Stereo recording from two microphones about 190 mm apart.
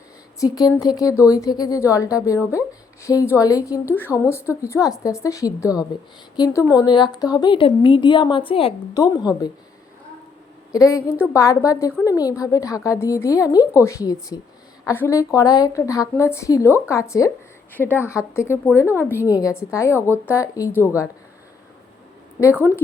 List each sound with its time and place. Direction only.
0.3 s a woman's voice: 20° left (ahead or behind)
10.7 s a woman's voice: 15° left (ahead or behind)
16.6 s a woman's voice: 10° right (ahead or behind)
16.9 s a woman's voice: 15° left (ahead or behind)
22.4 s a woman's voice: 15° left (ahead or behind)